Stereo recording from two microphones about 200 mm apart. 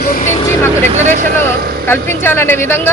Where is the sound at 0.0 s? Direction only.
45° left (ahead or behind).